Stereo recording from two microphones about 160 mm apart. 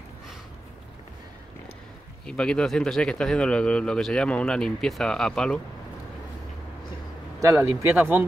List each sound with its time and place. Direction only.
2.2 s speech: 5° left (ahead or behind)
7.4 s a man's voice: 20° right (ahead or behind)